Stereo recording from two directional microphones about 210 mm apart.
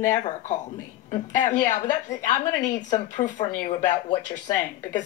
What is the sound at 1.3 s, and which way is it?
A woman's voice, 35° left (ahead or behind).